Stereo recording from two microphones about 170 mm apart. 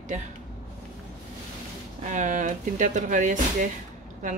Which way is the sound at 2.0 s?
45° right (ahead or behind).